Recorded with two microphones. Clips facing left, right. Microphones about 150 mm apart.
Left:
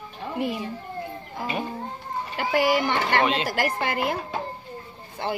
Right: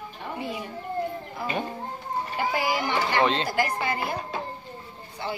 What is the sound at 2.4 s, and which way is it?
A woman's voice, 70° left (ahead or behind).